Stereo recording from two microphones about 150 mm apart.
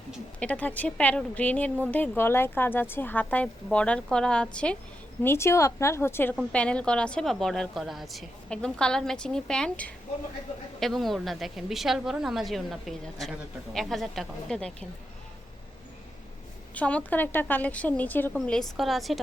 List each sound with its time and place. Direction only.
0.3 s a woman's voice: 10° left (ahead or behind)
5.2 s a woman's voice: 15° left (ahead or behind)
16.7 s a woman's voice: 10° left (ahead or behind)